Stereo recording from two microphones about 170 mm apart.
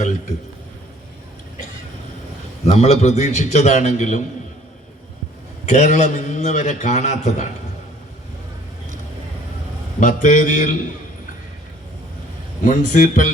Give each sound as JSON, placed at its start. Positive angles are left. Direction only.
{"t": 2.7, "sound": "a man's voice", "side_deg": 40}
{"t": 5.6, "sound": "a man's voice", "side_deg": 45}
{"t": 10.0, "sound": "a man's voice", "side_deg": 45}
{"t": 12.6, "sound": "a man's voice", "side_deg": 45}